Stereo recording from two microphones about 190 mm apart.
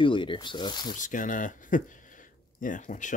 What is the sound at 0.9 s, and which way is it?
Speech, 45° left (ahead or behind).